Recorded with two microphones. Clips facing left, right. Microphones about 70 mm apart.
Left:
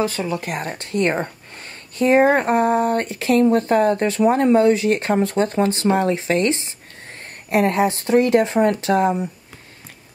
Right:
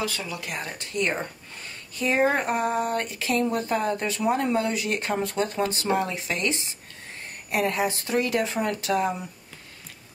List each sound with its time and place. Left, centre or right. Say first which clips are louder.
0.0 s speech: left 9 dB; left